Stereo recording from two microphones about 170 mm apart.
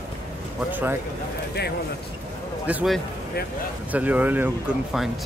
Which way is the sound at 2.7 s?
5° right (ahead or behind).